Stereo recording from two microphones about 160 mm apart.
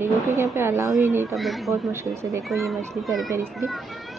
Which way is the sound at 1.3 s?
Centre (ahead or behind).